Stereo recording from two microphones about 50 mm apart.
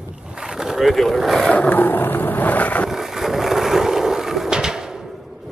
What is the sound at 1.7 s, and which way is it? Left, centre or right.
Roaring cats, left.